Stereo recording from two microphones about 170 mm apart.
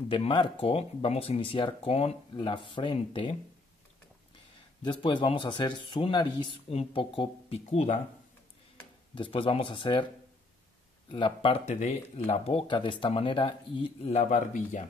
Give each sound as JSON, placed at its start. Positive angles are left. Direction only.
{"t": 0.1, "sound": "speech", "side_deg": 30}
{"t": 4.8, "sound": "a man's voice", "side_deg": 30}
{"t": 9.1, "sound": "a man's voice", "side_deg": 30}
{"t": 11.1, "sound": "speech", "side_deg": 30}